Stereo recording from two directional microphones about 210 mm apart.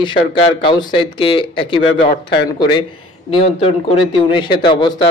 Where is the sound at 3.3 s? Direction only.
25° left (ahead or behind).